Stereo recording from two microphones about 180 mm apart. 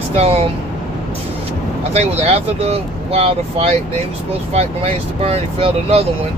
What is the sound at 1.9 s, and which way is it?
Speech, 35° right (ahead or behind).